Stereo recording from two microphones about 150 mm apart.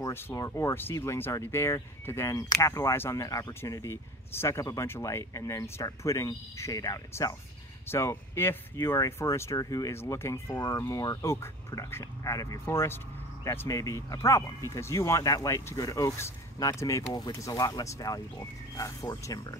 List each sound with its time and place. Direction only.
0.0 s speech: 20° left (ahead or behind)